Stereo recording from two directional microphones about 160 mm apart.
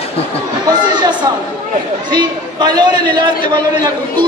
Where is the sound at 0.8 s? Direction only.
30° right (ahead or behind).